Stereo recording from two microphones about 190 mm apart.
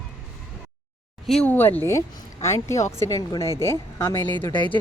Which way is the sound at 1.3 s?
5° left (ahead or behind).